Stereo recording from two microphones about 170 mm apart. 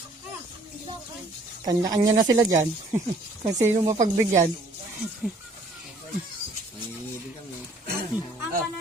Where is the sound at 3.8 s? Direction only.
45° right (ahead or behind).